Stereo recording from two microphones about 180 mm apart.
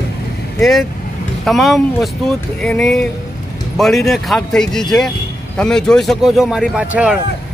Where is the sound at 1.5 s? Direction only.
Centre (ahead or behind).